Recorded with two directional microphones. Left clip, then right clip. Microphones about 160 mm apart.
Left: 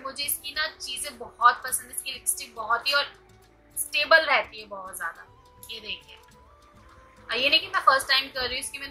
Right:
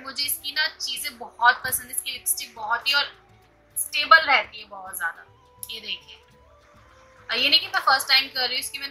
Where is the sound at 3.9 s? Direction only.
25° left (ahead or behind).